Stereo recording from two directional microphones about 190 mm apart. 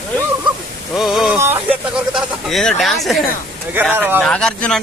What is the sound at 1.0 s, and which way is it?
Speech, centre (ahead or behind).